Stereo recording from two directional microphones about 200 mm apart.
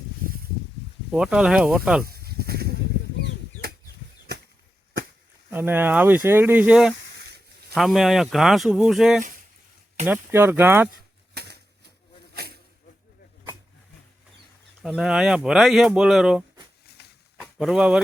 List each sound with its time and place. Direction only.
1.1 s speech: 5° right (ahead or behind)
2.0 s a sound: 50° right (ahead or behind)
5.5 s speech: 10° right (ahead or behind)
11.4 s bird: 50° right (ahead or behind)
12.3 s snake: 50° right (ahead or behind)
14.8 s speech: 5° right (ahead or behind)
17.0 s a sound: 55° left (ahead or behind)
17.4 s speech: centre (ahead or behind)